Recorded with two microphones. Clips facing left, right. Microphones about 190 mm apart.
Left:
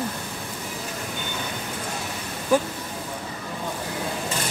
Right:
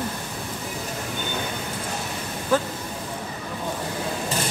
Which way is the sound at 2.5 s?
15° left (ahead or behind).